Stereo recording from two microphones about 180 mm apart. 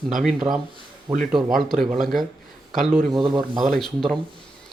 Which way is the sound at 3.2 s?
25° right (ahead or behind).